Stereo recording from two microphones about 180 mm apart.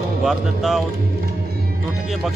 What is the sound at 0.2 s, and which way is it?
Speech, centre (ahead or behind).